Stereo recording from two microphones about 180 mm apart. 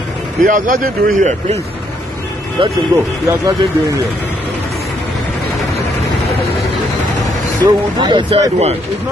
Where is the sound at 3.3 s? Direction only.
15° right (ahead or behind).